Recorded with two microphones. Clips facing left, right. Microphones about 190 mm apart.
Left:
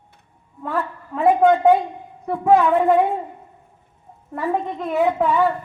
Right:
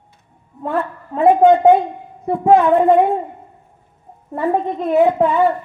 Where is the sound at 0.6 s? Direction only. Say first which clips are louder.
Right 4 dB; 25° right (ahead or behind).